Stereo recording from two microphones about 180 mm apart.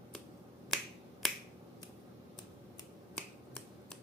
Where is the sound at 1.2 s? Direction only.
Centre (ahead or behind).